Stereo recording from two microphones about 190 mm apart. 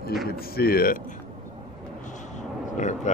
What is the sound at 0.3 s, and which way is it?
Speech, 55° left (ahead or behind).